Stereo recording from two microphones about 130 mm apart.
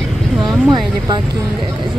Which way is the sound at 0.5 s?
5° right (ahead or behind).